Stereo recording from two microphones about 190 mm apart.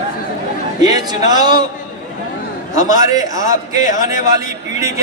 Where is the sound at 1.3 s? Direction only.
20° right (ahead or behind).